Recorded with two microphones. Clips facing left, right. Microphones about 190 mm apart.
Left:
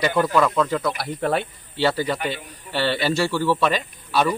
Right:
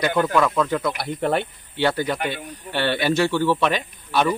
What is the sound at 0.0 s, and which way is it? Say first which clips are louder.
A man's voice: even; 5° left (ahead or behind).